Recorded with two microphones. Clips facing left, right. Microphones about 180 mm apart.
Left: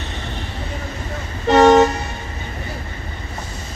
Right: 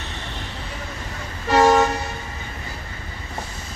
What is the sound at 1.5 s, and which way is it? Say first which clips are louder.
Vehicle: left 5 dB; 20° left (ahead or behind).